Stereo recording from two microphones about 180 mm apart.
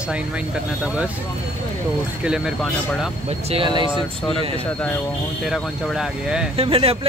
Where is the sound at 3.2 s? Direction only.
35° right (ahead or behind).